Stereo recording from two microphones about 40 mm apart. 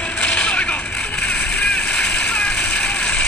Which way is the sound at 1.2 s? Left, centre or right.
Centre.